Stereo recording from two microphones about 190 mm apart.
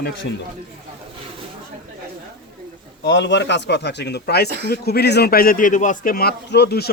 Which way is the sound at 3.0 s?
65° left (ahead or behind).